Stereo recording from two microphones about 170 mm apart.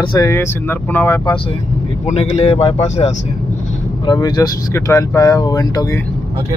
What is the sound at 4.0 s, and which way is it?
Speech, 25° left (ahead or behind).